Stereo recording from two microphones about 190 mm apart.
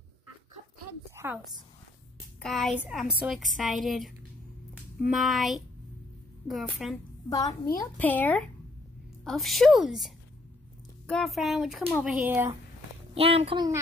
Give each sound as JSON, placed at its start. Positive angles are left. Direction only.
{"t": 1.1, "sound": "a sound", "side_deg": -10}
{"t": 2.4, "sound": "a woman's voice", "side_deg": 0}
{"t": 5.1, "sound": "a woman's voice", "side_deg": 0}
{"t": 7.2, "sound": "a woman's voice", "side_deg": 20}
{"t": 13.1, "sound": "speech", "side_deg": -30}